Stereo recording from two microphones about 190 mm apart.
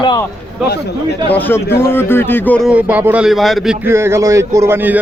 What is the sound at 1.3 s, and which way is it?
A man's voice, 10° left (ahead or behind).